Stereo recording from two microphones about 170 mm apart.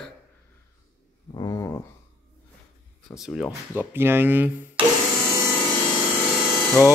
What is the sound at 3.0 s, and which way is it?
Speech, centre (ahead or behind).